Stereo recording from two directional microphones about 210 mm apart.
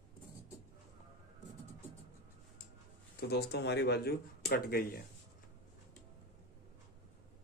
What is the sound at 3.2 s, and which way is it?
Speech, 50° left (ahead or behind).